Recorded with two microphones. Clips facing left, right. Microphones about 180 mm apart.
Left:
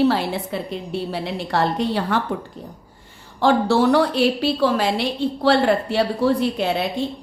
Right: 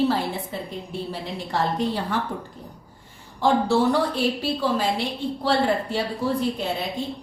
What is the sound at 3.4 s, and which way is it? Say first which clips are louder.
A woman's voice: left 3 dB; 75° left (ahead or behind).